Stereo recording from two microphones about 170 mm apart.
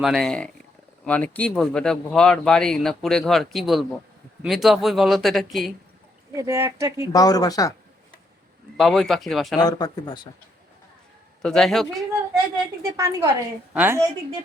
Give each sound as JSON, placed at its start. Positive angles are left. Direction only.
{"t": 0.0, "sound": "speech", "side_deg": 0}
{"t": 6.3, "sound": "speech", "side_deg": -15}
{"t": 7.1, "sound": "speech", "side_deg": 20}
{"t": 8.8, "sound": "speech", "side_deg": 0}
{"t": 9.6, "sound": "speech", "side_deg": 25}
{"t": 11.4, "sound": "speech", "side_deg": 0}
{"t": 12.8, "sound": "a woman's voice", "side_deg": -15}